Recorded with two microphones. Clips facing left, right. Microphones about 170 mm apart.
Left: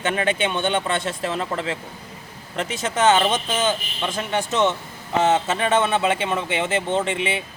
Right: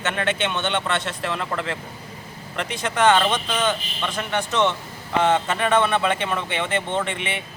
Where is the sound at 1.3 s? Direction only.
30° left (ahead or behind).